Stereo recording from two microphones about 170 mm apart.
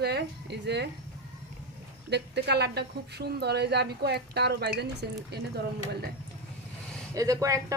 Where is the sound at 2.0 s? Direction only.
80° right.